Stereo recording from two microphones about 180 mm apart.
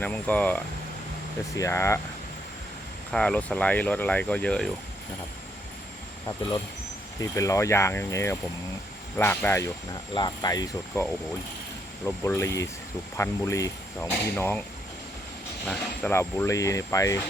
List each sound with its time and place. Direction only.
0.0 s speech: 10° left (ahead or behind)
3.1 s speech: 5° left (ahead or behind)
7.2 s speech: 15° left (ahead or behind)
15.6 s speech: 10° left (ahead or behind)